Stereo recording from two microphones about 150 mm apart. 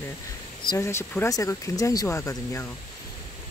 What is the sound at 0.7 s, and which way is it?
Speech, 20° left (ahead or behind).